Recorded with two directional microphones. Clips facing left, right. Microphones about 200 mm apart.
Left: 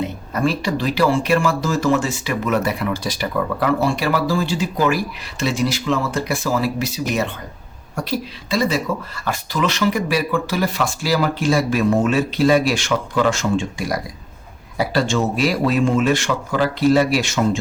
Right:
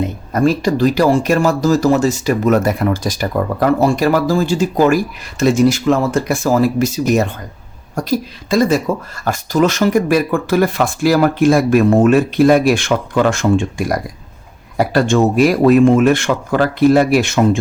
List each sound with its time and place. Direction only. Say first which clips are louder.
0.3 s speech: right 6 dB; 45° right (ahead or behind)